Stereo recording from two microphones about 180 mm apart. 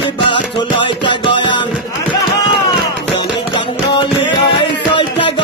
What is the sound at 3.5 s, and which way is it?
Music, 30° left (ahead or behind).